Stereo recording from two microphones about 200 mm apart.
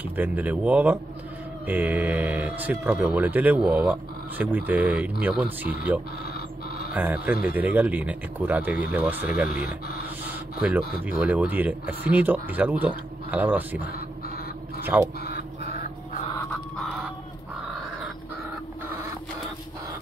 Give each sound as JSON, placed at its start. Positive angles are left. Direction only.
{"t": 0.0, "sound": "speech", "side_deg": -10}
{"t": 6.9, "sound": "speech", "side_deg": -10}
{"t": 9.5, "sound": "speech", "side_deg": 50}
{"t": 10.6, "sound": "speech", "side_deg": -5}
{"t": 14.9, "sound": "speech", "side_deg": -10}
{"t": 15.2, "sound": "a sound", "side_deg": 50}